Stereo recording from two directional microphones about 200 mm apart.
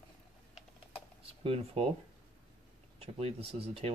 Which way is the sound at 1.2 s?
30° right (ahead or behind).